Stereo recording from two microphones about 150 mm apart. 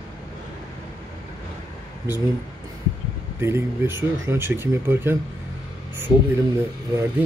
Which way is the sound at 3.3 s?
15° right (ahead or behind).